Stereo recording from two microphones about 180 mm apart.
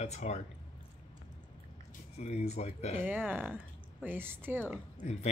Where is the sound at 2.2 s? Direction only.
40° left (ahead or behind).